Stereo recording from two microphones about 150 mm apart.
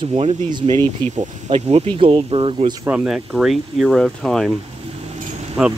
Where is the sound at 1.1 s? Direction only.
50° right (ahead or behind).